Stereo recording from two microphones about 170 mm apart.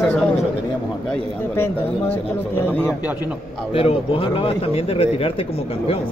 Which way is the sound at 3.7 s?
35° left (ahead or behind).